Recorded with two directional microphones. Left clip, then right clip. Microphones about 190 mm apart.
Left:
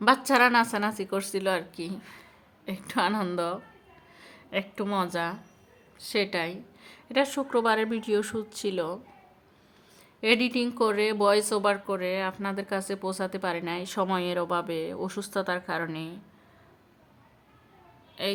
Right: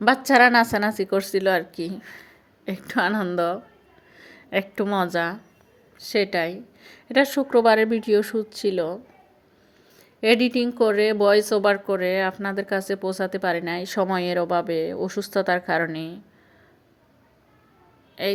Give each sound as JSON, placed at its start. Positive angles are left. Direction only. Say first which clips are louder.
{"t": 0.0, "sound": "a woman's voice", "louder": "right 5 dB", "side_deg": -15}
{"t": 10.2, "sound": "a woman's voice", "louder": "right 5 dB", "side_deg": -15}
{"t": 18.2, "sound": "a woman's voice", "louder": "right 5 dB", "side_deg": -20}